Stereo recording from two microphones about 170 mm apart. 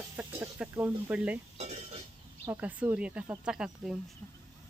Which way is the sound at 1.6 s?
40° right (ahead or behind).